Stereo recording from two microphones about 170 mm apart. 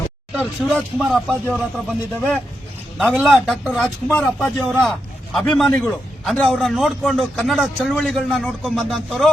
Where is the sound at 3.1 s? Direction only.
Centre (ahead or behind).